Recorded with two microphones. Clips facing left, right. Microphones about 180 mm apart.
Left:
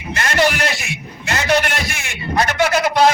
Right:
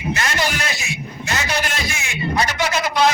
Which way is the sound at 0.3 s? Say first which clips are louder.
Left 6 dB; 60° left (ahead or behind).